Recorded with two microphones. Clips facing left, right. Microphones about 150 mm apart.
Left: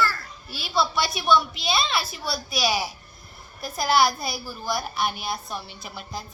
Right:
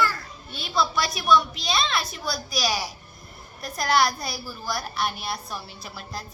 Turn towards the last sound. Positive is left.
turn(degrees=0)  # may be behind; listen again after turning